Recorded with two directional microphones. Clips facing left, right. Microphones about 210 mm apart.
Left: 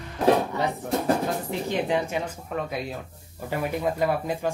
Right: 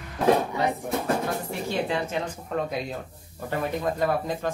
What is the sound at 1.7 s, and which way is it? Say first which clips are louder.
Speech: left 2 dB; 15° left (ahead or behind).